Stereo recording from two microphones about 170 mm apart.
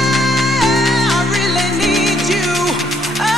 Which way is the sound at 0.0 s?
Centre (ahead or behind).